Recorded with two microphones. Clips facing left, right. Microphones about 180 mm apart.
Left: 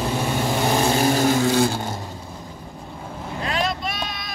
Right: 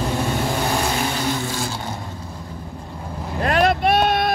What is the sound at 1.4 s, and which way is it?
Vehicle, 60° left (ahead or behind).